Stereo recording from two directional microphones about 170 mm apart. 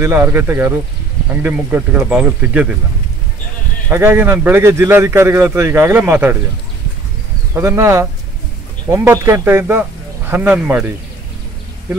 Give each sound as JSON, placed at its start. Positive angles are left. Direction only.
{"t": 0.0, "sound": "a man's voice", "side_deg": -15}
{"t": 3.9, "sound": "a man's voice", "side_deg": -15}
{"t": 7.5, "sound": "a man's voice", "side_deg": -15}